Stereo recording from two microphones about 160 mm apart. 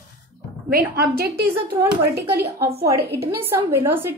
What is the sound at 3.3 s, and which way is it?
Speech, 15° right (ahead or behind).